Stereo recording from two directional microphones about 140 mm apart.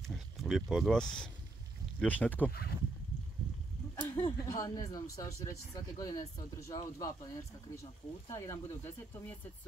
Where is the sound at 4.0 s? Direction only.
15° left (ahead or behind).